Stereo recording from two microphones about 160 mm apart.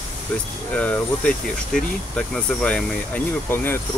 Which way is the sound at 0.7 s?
5° left (ahead or behind).